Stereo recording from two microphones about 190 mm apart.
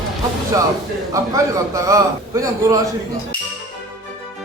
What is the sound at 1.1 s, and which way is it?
A man's voice, 15° right (ahead or behind).